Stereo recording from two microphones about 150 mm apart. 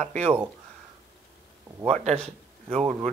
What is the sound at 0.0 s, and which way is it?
Speech, 45° right (ahead or behind).